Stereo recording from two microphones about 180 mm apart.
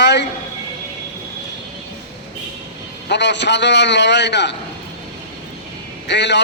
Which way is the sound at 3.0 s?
75° left (ahead or behind).